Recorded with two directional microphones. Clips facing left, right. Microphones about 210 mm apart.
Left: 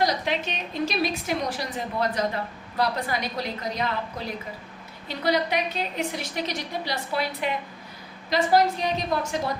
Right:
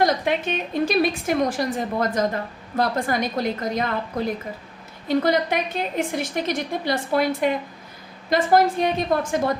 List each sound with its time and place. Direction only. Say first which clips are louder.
0.0 s a woman's voice: right 4 dB; 50° right (ahead or behind)